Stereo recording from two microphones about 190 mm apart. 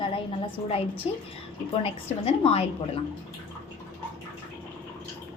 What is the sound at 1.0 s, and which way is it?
A woman's voice, 30° left (ahead or behind).